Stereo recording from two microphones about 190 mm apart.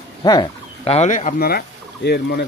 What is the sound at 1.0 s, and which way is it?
Speech, 40° left (ahead or behind).